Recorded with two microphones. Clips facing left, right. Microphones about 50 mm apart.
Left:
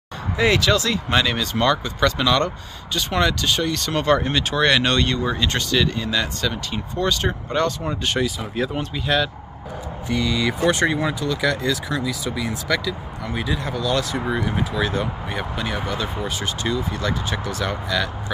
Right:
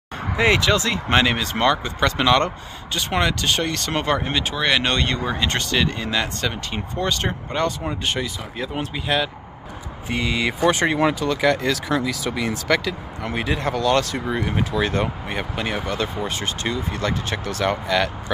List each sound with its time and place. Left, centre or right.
0.4 s speech: right
3.1 s speech: right
3.3 s speech: right
4.0 s speech: centre
4.8 s speech: right
5.2 s speech: centre
5.5 s speech: right; by 9.3 s centre
10.1 s speech: right
10.9 s speech: right
12.1 s speech: right
12.6 s speech: right